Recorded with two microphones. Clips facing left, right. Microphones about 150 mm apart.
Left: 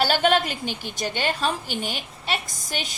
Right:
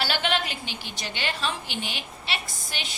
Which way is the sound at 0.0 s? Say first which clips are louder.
Left 7 dB; 45° left (ahead or behind).